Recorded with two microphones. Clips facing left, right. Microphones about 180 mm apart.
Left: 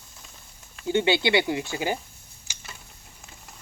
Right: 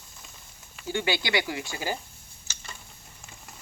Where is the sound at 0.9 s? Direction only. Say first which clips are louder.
Left 6 dB; 25° left (ahead or behind).